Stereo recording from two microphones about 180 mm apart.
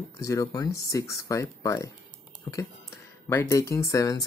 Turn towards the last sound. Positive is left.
turn(degrees=20)  # may be behind; listen again after turning